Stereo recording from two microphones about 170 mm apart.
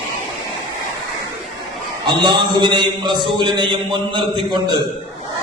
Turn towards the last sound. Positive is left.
turn(degrees=-25)  # may be behind; listen again after turning